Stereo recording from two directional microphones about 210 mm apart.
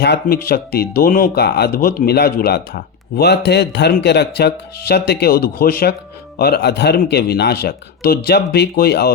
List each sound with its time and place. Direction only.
0.0 s speech: 55° left (ahead or behind)